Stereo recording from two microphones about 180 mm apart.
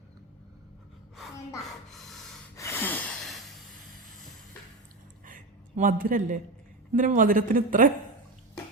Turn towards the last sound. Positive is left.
turn(degrees=-50)  # may be behind; listen again after turning